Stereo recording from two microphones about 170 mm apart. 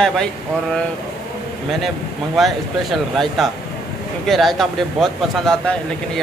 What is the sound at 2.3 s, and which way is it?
A man's voice, centre (ahead or behind).